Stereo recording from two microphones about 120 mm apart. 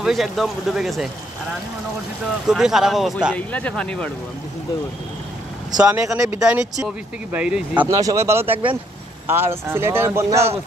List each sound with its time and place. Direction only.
0.0 s speech: centre (ahead or behind)
2.4 s speech: 5° right (ahead or behind)
3.3 s speech: 10° left (ahead or behind)
5.8 s speech: 15° right (ahead or behind)
6.0 s speech: 25° right (ahead or behind)
6.4 s speech: 5° right (ahead or behind)
7.9 s speech: 30° right (ahead or behind)